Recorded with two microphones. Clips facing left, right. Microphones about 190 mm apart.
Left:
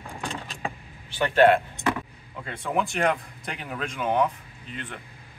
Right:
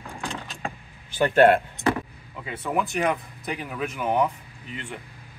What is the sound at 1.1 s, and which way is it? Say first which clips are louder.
Speech: right 1 dB; 45° right (ahead or behind).